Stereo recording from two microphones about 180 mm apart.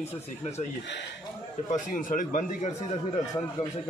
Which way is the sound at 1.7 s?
50° left (ahead or behind).